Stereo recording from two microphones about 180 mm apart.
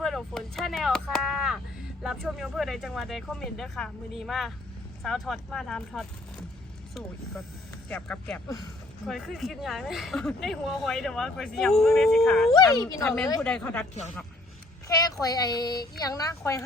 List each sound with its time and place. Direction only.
0.0 s a sound: centre (ahead or behind)
2.0 s speech: centre (ahead or behind)
7.9 s speech: 5° left (ahead or behind)
12.5 s speech: 20° left (ahead or behind)
13.4 s speech: 10° left (ahead or behind)
14.8 s speech: 20° left (ahead or behind)